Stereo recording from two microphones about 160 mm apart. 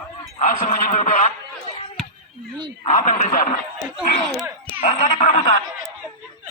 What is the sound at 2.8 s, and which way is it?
Speech, 50° left (ahead or behind).